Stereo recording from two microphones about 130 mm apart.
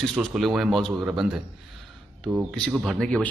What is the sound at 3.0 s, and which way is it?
Speech, 5° left (ahead or behind).